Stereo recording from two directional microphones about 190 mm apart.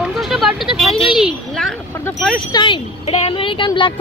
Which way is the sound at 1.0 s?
Centre (ahead or behind).